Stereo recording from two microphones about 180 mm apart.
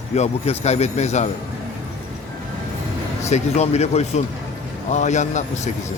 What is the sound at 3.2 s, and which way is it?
Speech, 40° left (ahead or behind).